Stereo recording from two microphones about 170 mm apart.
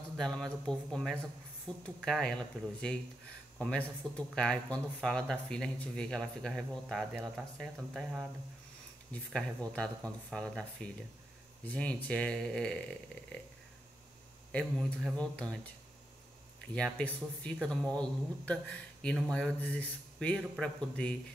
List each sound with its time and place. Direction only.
0.2 s speech: 5° left (ahead or behind)
4.0 s speech: 25° right (ahead or behind)
4.4 s speech: 5° left (ahead or behind)
9.1 s speech: 5° left (ahead or behind)
14.5 s speech: 5° left (ahead or behind)
16.7 s speech: 5° left (ahead or behind)